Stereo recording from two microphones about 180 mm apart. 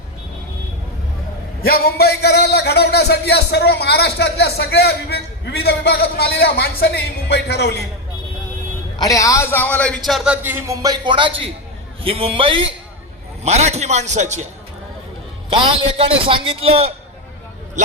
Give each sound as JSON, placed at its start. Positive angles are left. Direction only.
{"t": 1.6, "sound": "a man's voice", "side_deg": 60}
{"t": 9.0, "sound": "a man's voice", "side_deg": 20}
{"t": 10.1, "sound": "a man's voice", "side_deg": -5}
{"t": 15.5, "sound": "a man's voice", "side_deg": -30}